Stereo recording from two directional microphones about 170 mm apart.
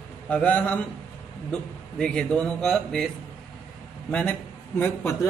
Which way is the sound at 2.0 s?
5° left (ahead or behind).